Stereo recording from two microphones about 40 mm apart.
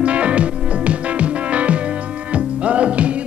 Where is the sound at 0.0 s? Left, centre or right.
Right.